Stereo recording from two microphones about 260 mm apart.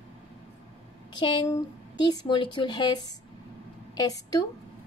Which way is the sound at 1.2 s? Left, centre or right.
Centre.